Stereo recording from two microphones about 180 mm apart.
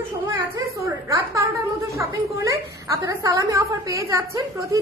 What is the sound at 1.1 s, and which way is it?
A woman's voice, 20° right (ahead or behind).